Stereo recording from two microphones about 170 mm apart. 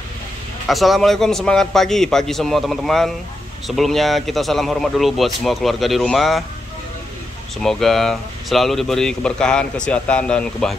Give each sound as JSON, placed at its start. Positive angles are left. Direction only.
{"t": 0.7, "sound": "speech", "side_deg": 0}
{"t": 7.6, "sound": "speech", "side_deg": 0}